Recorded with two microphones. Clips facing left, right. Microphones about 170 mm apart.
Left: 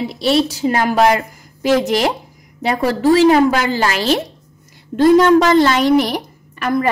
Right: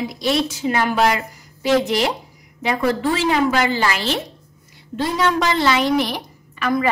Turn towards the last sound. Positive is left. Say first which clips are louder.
# left 2 dB
turn(degrees=45)  # may be behind; listen again after turning